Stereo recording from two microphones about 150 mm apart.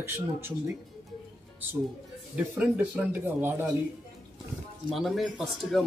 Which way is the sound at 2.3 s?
10° right (ahead or behind).